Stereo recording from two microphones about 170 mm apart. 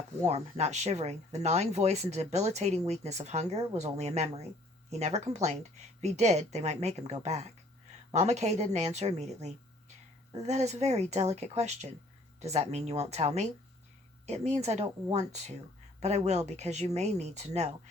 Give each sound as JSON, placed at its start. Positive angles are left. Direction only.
{"t": 0.3, "sound": "speech", "side_deg": -40}